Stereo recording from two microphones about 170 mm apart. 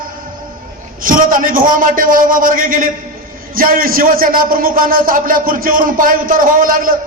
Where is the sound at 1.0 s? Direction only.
55° right (ahead or behind).